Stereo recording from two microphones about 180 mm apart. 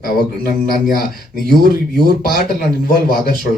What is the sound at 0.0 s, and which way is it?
Speech, 50° left (ahead or behind).